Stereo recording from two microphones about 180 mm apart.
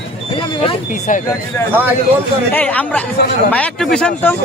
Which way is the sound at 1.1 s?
45° left (ahead or behind).